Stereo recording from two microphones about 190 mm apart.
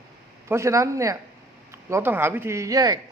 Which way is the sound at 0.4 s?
15° right (ahead or behind).